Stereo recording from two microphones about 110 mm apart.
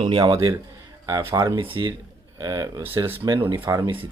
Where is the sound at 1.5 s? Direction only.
50° right (ahead or behind).